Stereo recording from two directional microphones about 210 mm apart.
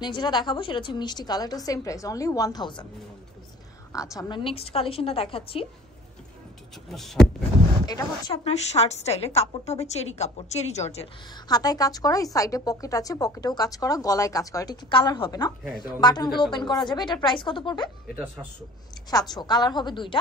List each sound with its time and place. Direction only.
0.0 s a woman's voice: 20° left (ahead or behind)
3.9 s a woman's voice: 15° left (ahead or behind)
6.9 s speech: centre (ahead or behind)
7.8 s a woman's voice: 20° left (ahead or behind)
11.4 s a woman's voice: 20° left (ahead or behind)
18.1 s a man's voice: 10° right (ahead or behind)
19.0 s a woman's voice: 20° left (ahead or behind)